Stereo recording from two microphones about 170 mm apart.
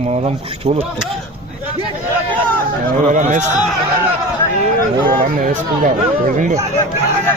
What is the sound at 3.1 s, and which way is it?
Speech, 50° right (ahead or behind).